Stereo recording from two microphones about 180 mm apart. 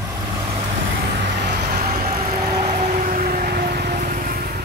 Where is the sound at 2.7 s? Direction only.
45° right (ahead or behind).